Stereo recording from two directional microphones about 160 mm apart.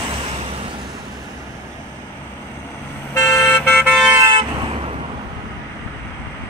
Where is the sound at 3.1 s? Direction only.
15° left (ahead or behind).